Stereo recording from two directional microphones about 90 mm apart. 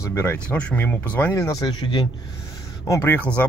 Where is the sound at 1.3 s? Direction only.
40° left (ahead or behind).